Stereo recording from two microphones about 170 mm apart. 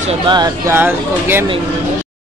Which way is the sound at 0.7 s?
10° right (ahead or behind).